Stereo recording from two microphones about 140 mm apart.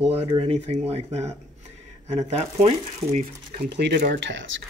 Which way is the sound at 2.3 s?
50° right (ahead or behind).